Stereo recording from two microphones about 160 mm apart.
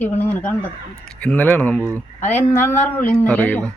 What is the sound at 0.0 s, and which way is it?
Speech, 10° left (ahead or behind).